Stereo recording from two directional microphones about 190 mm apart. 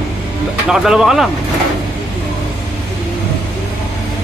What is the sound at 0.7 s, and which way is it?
Speech, 5° right (ahead or behind).